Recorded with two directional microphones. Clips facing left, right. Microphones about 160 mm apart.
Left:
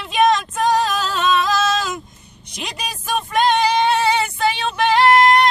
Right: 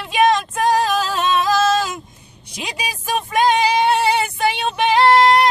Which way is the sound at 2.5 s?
5° right (ahead or behind).